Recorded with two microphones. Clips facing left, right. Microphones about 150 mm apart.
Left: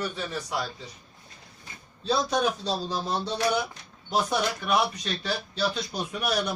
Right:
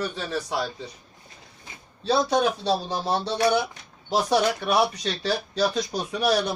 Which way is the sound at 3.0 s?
70° right (ahead or behind).